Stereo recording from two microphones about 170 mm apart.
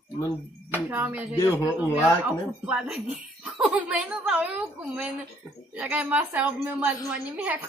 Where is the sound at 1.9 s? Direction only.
5° right (ahead or behind).